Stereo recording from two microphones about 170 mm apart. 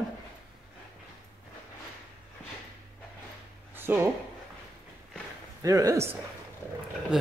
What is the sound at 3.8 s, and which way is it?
Speech, 15° right (ahead or behind).